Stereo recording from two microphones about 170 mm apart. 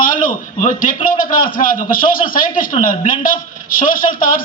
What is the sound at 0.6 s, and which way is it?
A man's voice, 50° left (ahead or behind).